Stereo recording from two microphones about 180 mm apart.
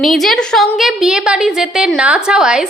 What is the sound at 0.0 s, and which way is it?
A woman's voice, centre (ahead or behind).